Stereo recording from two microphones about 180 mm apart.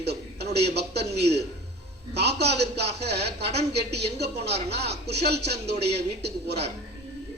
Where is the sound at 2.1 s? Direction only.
65° right (ahead or behind).